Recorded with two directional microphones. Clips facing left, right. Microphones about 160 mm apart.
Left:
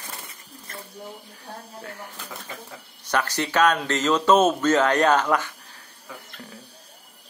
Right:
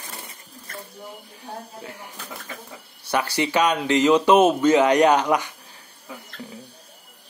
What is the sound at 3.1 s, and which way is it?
Speech, 10° right (ahead or behind).